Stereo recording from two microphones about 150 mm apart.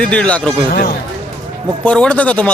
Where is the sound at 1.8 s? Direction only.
10° left (ahead or behind).